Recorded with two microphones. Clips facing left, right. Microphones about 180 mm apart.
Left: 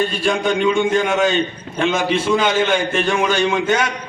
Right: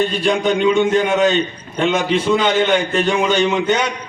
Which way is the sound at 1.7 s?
80° left.